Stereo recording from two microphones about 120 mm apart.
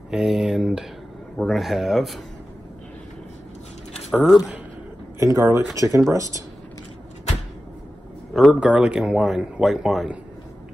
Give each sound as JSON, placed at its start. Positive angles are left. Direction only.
{"t": 0.1, "sound": "a man's voice", "side_deg": -5}
{"t": 4.1, "sound": "speech", "side_deg": -5}
{"t": 5.2, "sound": "speech", "side_deg": -25}
{"t": 8.3, "sound": "a man's voice", "side_deg": 0}